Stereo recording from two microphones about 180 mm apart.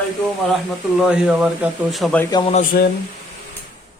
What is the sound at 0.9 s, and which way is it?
Speech, 5° right (ahead or behind).